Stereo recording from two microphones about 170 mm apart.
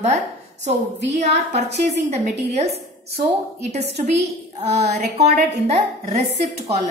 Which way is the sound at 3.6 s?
40° right (ahead or behind).